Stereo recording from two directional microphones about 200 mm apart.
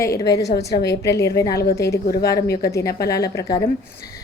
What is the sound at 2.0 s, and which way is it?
Speech, 50° left (ahead or behind).